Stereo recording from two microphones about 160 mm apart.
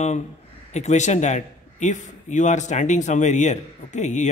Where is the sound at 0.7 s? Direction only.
45° left (ahead or behind).